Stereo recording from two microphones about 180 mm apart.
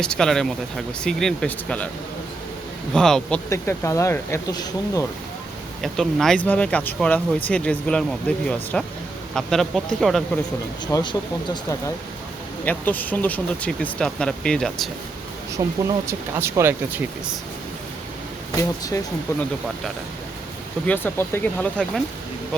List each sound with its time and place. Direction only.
0.0 s speech: 5° left (ahead or behind)
2.9 s speech: 5° left (ahead or behind)
3.5 s speech: 15° left (ahead or behind)
5.8 s speech: centre (ahead or behind)
10.9 s speech: 25° left (ahead or behind)
12.6 s speech: 10° left (ahead or behind)
15.5 s speech: 15° right (ahead or behind)
18.5 s speech: 20° left (ahead or behind)
20.8 s speech: 10° left (ahead or behind)